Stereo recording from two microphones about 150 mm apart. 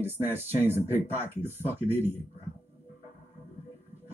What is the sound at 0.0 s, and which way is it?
Speech, 15° right (ahead or behind).